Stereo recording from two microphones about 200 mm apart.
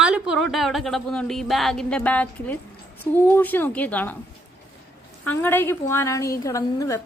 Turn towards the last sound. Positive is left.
turn(degrees=15)  # may be behind; listen again after turning